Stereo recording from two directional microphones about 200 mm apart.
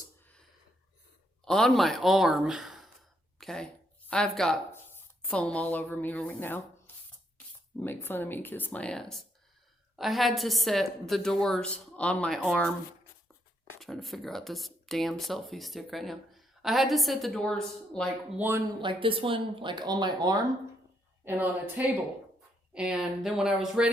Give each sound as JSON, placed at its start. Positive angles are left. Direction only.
{"t": 1.5, "sound": "speech", "side_deg": 0}
{"t": 3.3, "sound": "a sound", "side_deg": 0}
{"t": 4.1, "sound": "speech", "side_deg": 5}
{"t": 13.7, "sound": "speech", "side_deg": 0}
{"t": 18.3, "sound": "speech", "side_deg": -10}
{"t": 18.8, "sound": "speech", "side_deg": -25}
{"t": 21.2, "sound": "speech", "side_deg": -10}